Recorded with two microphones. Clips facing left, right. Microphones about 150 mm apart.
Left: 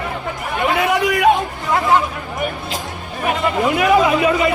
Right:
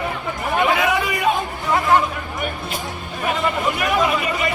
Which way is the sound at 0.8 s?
75° left (ahead or behind).